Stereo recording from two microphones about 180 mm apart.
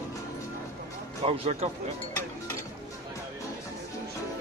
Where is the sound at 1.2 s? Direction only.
35° right (ahead or behind).